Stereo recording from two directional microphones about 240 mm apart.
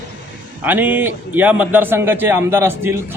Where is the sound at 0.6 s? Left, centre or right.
Centre.